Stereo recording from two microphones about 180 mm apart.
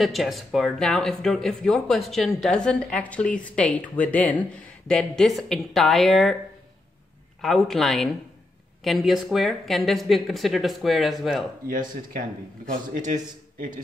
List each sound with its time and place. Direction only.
0.0 s speech: centre (ahead or behind)
7.4 s speech: centre (ahead or behind)
12.9 s a man's voice: 45° right (ahead or behind)